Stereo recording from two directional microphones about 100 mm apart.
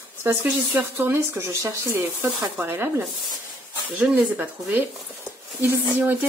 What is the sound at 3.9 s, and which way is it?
Speech, 15° right (ahead or behind).